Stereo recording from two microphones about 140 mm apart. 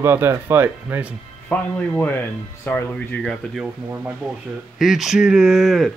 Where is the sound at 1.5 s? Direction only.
10° left (ahead or behind).